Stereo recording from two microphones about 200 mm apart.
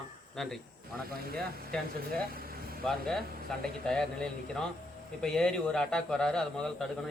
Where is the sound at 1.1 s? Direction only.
50° right (ahead or behind).